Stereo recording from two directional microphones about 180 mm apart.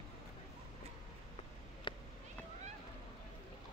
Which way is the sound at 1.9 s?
25° left (ahead or behind).